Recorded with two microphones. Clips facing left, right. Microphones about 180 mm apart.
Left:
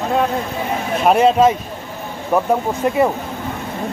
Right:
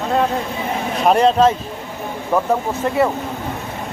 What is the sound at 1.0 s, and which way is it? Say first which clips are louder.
Speech: left 1 dB; 5° left (ahead or behind).